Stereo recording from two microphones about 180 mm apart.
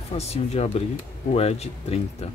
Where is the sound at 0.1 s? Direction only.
35° left (ahead or behind).